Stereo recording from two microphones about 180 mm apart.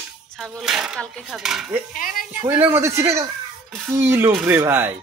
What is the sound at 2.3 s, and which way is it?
Speech, 15° right (ahead or behind).